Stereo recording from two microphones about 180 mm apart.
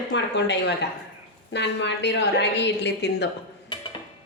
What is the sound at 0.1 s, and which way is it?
A woman's voice, 75° left (ahead or behind).